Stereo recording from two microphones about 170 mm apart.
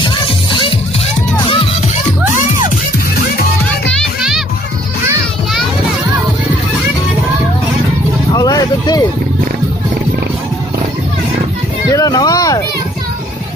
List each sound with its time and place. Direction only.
0.0 s music: 30° left (ahead or behind)
3.9 s music: centre (ahead or behind)
8.3 s vehicle: 20° left (ahead or behind)
11.9 s vehicle: 20° left (ahead or behind)